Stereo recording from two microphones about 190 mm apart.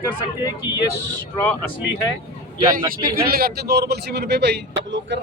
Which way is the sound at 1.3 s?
10° left (ahead or behind).